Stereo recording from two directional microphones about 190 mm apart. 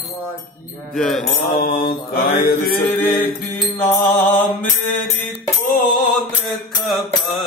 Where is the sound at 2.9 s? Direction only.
10° left (ahead or behind).